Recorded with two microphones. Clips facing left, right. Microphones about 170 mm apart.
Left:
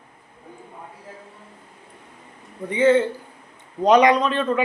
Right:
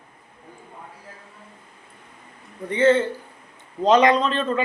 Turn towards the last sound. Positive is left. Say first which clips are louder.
# left 1 dB
turn(degrees=15)  # may be behind; listen again after turning